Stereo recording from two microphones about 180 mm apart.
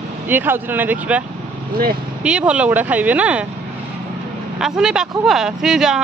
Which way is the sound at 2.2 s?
5° right (ahead or behind).